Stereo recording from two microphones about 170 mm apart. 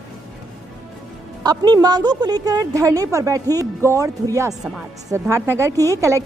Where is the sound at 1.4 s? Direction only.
25° right (ahead or behind).